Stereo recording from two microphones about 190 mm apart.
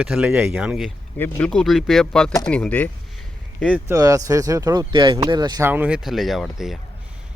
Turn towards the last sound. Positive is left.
turn(degrees=0)  # may be behind; listen again after turning